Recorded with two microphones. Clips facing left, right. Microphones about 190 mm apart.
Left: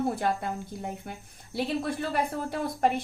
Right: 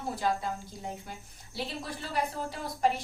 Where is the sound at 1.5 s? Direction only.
55° left (ahead or behind).